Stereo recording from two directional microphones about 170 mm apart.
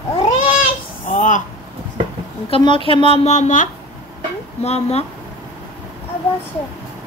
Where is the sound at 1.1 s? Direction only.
50° left (ahead or behind).